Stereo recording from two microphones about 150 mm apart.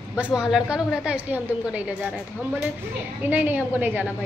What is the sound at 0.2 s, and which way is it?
A woman's voice, 5° right (ahead or behind).